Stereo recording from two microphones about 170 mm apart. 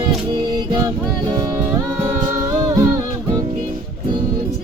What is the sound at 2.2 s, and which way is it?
Humming, 20° right (ahead or behind).